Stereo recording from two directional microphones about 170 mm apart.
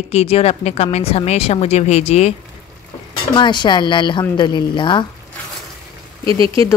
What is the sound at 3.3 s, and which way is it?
Speech, 25° left (ahead or behind).